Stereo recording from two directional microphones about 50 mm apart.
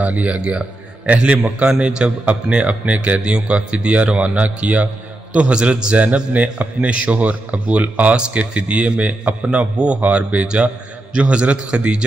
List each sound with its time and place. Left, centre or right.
0.0 s a man's voice: right